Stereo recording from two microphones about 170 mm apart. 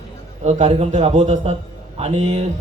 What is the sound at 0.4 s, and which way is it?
A man's voice, 40° right (ahead or behind).